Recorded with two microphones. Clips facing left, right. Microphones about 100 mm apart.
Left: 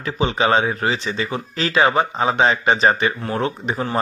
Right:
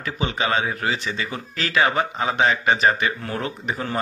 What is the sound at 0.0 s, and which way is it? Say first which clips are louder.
A man's voice: left 5 dB; 25° left (ahead or behind).